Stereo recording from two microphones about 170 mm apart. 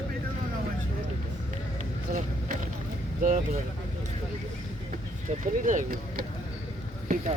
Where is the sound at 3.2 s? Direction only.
50° right (ahead or behind).